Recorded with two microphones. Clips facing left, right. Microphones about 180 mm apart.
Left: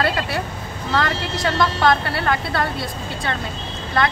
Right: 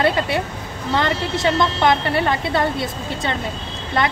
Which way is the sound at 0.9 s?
25° right (ahead or behind).